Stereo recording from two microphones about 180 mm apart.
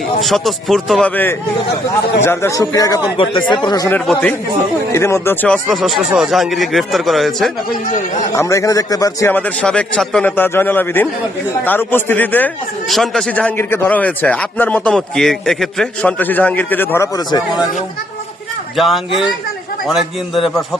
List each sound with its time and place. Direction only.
0.2 s speech: centre (ahead or behind); by 3.9 s 20° left (ahead or behind)
3.9 s speech: 5° left (ahead or behind)
5.6 s speech: centre (ahead or behind)
8.3 s speech: 15° left (ahead or behind)
18.8 s speech: centre (ahead or behind)